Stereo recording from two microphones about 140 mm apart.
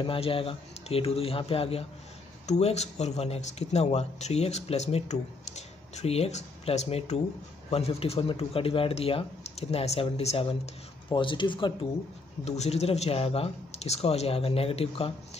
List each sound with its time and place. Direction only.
0.0 s speech: 40° left (ahead or behind)
12.4 s speech: 50° left (ahead or behind)